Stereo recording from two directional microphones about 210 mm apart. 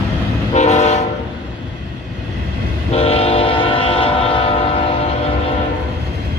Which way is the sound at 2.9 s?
30° left (ahead or behind).